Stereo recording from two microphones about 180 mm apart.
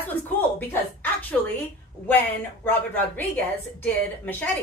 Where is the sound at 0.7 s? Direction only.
10° left (ahead or behind).